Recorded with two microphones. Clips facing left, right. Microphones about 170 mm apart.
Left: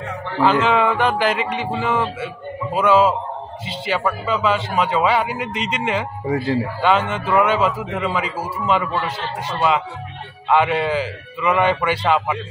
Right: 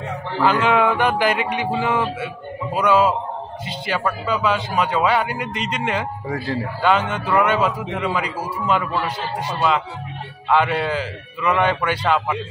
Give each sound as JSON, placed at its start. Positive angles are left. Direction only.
{"t": 0.4, "sound": "a man's voice", "side_deg": 0}
{"t": 6.2, "sound": "a man's voice", "side_deg": 20}
{"t": 6.8, "sound": "a man's voice", "side_deg": 0}
{"t": 10.5, "sound": "a man's voice", "side_deg": 5}